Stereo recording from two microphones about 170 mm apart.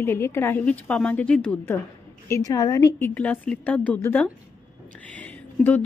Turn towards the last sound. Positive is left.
turn(degrees=10)  # may be behind; listen again after turning